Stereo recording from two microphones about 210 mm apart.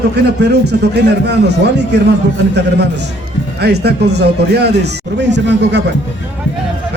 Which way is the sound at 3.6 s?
50° right (ahead or behind).